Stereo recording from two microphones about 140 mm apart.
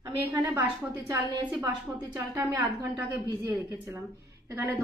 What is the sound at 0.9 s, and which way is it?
A woman's voice, 25° right (ahead or behind).